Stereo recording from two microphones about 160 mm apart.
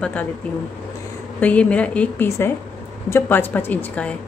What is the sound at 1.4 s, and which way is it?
A woman's voice, 10° left (ahead or behind).